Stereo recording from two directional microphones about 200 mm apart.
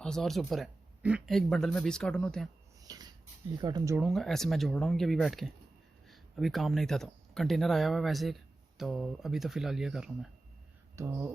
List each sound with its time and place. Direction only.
0.0 s speech: 5° left (ahead or behind)
2.8 s a sound: 20° right (ahead or behind)
3.6 s speech: 20° right (ahead or behind)
3.9 s speech: centre (ahead or behind)
10.9 s speech: 15° right (ahead or behind)